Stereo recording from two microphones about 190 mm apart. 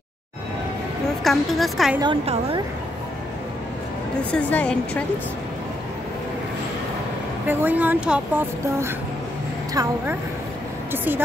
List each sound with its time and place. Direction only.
1.2 s a woman's voice: centre (ahead or behind)
2.0 s a woman's voice: 30° right (ahead or behind)
4.2 s a woman's voice: 10° left (ahead or behind)
7.4 s a woman's voice: 10° right (ahead or behind)